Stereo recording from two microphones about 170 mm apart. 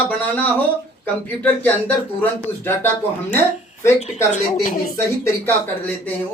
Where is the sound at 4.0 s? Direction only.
45° left (ahead or behind).